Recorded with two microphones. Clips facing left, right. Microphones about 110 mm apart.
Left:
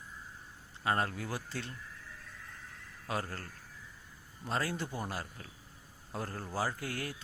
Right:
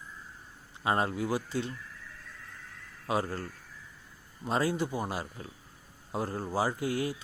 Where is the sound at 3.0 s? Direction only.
15° right (ahead or behind).